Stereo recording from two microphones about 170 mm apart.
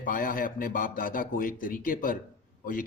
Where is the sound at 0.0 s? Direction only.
55° left (ahead or behind).